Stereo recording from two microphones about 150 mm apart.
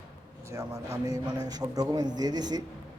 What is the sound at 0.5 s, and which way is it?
A man's voice, 25° right (ahead or behind).